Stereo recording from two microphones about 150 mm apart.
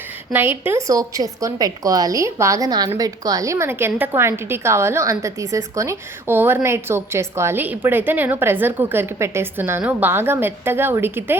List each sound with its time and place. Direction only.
0.3 s a woman's voice: 15° right (ahead or behind)